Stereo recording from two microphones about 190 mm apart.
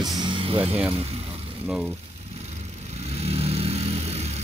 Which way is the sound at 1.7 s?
5° right (ahead or behind).